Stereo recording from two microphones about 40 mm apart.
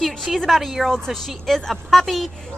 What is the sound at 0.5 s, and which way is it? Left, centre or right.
Speech, centre.